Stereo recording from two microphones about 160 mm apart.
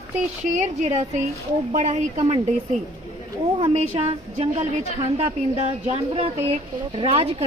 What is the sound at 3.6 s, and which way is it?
Speech, 40° right (ahead or behind).